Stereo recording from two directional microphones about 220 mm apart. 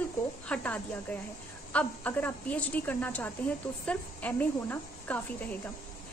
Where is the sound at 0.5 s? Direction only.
5° left (ahead or behind).